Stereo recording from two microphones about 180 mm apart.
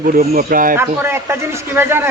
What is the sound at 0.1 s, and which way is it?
Speech, 50° right (ahead or behind).